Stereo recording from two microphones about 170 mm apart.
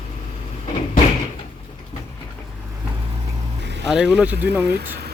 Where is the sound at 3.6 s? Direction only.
90° right.